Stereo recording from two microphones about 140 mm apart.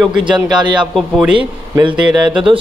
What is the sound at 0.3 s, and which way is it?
Speech, 35° right (ahead or behind).